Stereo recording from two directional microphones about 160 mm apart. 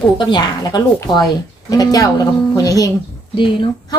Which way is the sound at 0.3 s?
25° left (ahead or behind).